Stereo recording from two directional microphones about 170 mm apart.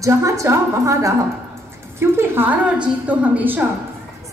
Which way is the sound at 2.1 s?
15° right (ahead or behind).